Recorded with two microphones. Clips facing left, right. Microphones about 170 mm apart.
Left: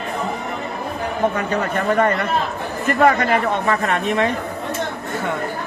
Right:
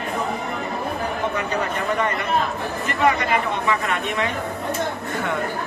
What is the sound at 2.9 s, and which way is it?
Speech, 50° left (ahead or behind).